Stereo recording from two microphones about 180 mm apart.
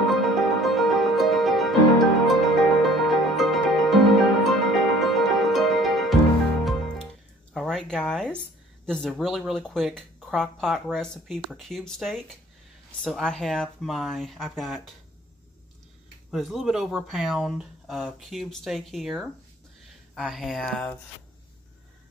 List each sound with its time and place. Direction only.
0.1 s music: centre (ahead or behind)
7.7 s a sound: 5° left (ahead or behind)
8.8 s speech: 5° left (ahead or behind)
16.3 s speech: centre (ahead or behind)